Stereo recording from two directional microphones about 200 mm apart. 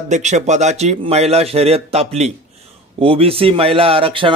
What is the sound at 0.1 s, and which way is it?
A man's voice, 35° right (ahead or behind).